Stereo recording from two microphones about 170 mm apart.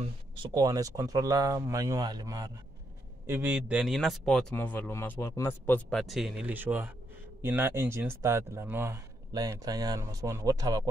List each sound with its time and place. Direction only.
0.0 s speech: 25° right (ahead or behind)